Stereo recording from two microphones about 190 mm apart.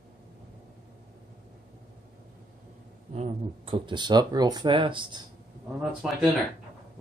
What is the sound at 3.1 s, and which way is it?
Speech, 30° right (ahead or behind).